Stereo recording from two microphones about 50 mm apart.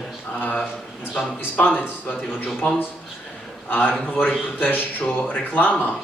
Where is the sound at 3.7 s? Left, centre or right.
Left.